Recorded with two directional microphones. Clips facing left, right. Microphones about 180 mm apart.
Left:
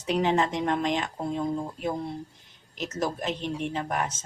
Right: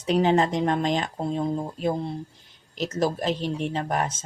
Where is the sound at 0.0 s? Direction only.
35° right (ahead or behind).